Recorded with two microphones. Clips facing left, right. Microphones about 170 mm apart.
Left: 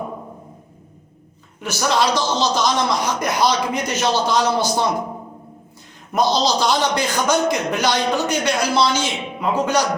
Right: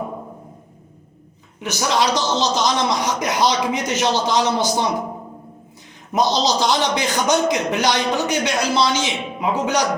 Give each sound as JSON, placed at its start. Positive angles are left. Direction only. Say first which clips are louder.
{"t": 1.6, "sound": "a man's voice", "louder": "left 1 dB", "side_deg": -15}
{"t": 6.1, "sound": "a man's voice", "louder": "even", "side_deg": -20}